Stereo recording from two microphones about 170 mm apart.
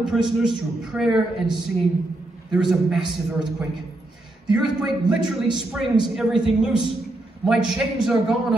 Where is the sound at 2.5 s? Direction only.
Centre (ahead or behind).